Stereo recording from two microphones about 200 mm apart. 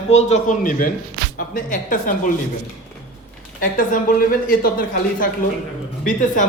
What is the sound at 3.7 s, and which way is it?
Speech, 45° left (ahead or behind).